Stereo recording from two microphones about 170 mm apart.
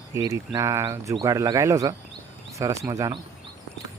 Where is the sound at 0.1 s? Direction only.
20° right (ahead or behind).